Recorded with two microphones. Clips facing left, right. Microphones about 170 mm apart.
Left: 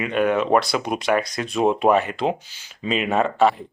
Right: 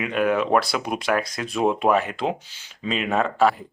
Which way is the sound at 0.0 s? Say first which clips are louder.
Left 1 dB; centre (ahead or behind).